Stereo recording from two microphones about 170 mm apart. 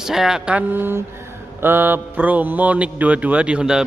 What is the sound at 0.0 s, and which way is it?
Speech, centre (ahead or behind).